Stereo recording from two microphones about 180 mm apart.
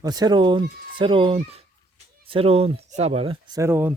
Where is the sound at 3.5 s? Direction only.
15° right (ahead or behind).